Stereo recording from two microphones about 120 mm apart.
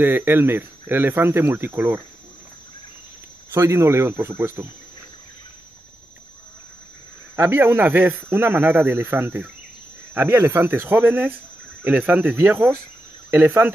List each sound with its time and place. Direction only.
0.0 s speech: 20° right (ahead or behind)
3.5 s speech: 25° right (ahead or behind)
7.3 s a man's voice: 20° right (ahead or behind)